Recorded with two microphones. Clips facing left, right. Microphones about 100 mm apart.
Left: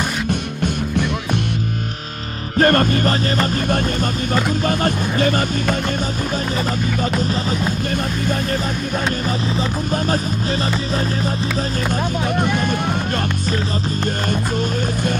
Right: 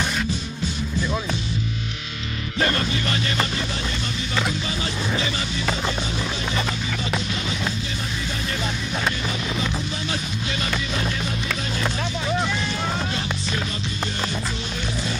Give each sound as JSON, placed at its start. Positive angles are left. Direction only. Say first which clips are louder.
{"t": 2.5, "sound": "speech", "louder": "left 9 dB", "side_deg": 50}
{"t": 7.2, "sound": "speech", "louder": "left 7 dB", "side_deg": 45}
{"t": 12.4, "sound": "vehicle", "louder": "left 6 dB", "side_deg": 50}